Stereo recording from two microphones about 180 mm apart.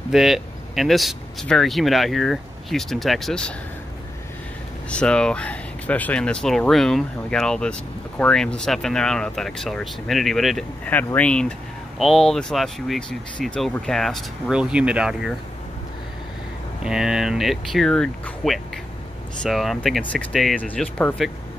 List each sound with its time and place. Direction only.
0.1 s speech: centre (ahead or behind)
4.8 s speech: 5° left (ahead or behind)
16.8 s speech: 5° right (ahead or behind)